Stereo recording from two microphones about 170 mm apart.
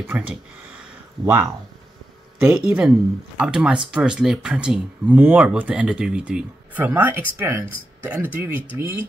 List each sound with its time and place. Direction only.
0.1 s speech: 10° right (ahead or behind)
2.4 s speech: 10° right (ahead or behind)